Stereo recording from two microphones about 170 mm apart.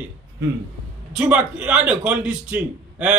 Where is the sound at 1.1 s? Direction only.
5° right (ahead or behind).